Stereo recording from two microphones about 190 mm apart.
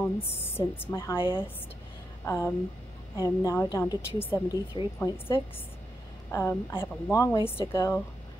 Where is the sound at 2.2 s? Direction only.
15° left (ahead or behind).